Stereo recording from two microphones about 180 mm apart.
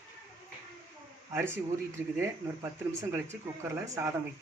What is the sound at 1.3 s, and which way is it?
Speech, 15° right (ahead or behind).